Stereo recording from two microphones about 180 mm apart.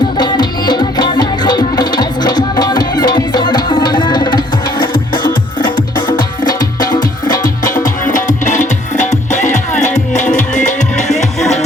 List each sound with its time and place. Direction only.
0.2 s music: 25° left (ahead or behind)
7.4 s music: 50° left (ahead or behind)